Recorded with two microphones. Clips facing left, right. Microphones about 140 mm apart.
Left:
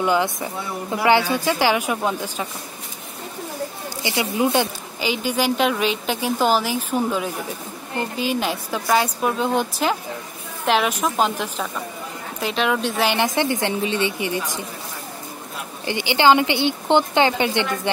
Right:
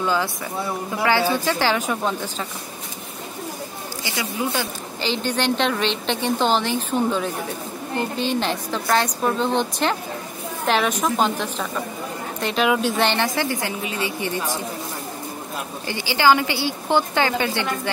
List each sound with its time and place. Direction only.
0.0 s a woman's voice: 20° left (ahead or behind)
4.0 s a woman's voice: 20° left (ahead or behind)
5.0 s a woman's voice: 10° left (ahead or behind)
13.2 s a woman's voice: 20° left (ahead or behind)
14.2 s a woman's voice: 15° left (ahead or behind)
15.9 s a woman's voice: 20° left (ahead or behind)